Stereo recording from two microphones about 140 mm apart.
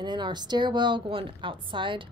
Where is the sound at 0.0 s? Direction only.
30° right (ahead or behind).